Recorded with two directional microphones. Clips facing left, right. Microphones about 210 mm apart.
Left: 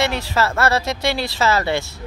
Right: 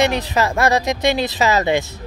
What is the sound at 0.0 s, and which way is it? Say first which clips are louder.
Speech: right 3 dB; 20° right (ahead or behind).